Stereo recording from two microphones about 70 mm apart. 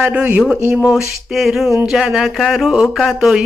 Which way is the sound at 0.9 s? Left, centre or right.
Centre.